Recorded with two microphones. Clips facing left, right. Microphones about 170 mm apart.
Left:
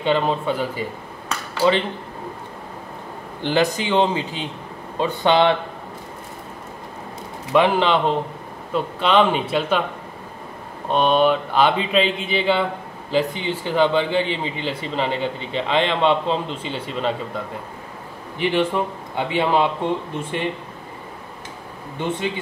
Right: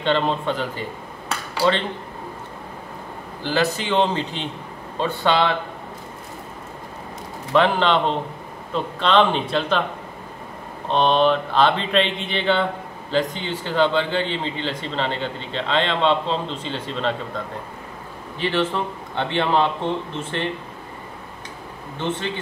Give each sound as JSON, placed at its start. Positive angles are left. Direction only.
{"t": 0.0, "sound": "a man's voice", "side_deg": 10}
{"t": 3.4, "sound": "a man's voice", "side_deg": 15}
{"t": 7.5, "sound": "a man's voice", "side_deg": 10}
{"t": 10.9, "sound": "a man's voice", "side_deg": 10}
{"t": 18.4, "sound": "a man's voice", "side_deg": 15}
{"t": 21.9, "sound": "a man's voice", "side_deg": 10}